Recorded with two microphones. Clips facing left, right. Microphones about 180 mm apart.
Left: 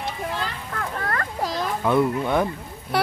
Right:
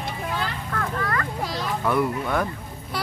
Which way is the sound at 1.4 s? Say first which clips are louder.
Left 3 dB; 45° left (ahead or behind).